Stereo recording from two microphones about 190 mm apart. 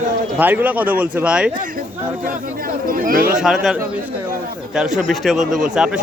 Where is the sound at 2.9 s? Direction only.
50° right (ahead or behind).